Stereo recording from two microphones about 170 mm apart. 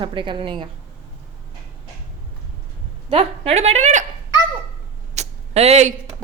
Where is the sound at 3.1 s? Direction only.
35° right (ahead or behind).